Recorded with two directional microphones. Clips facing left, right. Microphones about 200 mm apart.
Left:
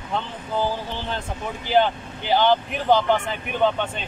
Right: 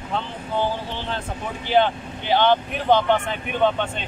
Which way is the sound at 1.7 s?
5° left (ahead or behind).